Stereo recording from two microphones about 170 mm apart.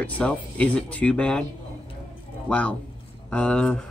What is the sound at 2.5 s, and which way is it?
Speech, 10° left (ahead or behind).